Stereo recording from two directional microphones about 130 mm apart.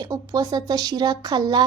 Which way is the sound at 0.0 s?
30° right (ahead or behind).